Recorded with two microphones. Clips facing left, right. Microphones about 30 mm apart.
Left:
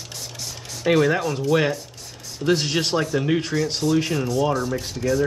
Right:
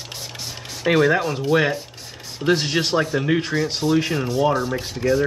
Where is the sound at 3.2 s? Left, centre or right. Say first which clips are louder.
Right 1 dB; centre.